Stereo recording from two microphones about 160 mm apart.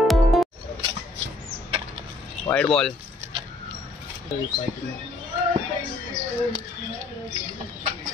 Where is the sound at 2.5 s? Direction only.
20° left (ahead or behind).